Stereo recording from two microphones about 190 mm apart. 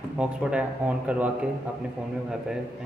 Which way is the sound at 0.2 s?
5° right (ahead or behind).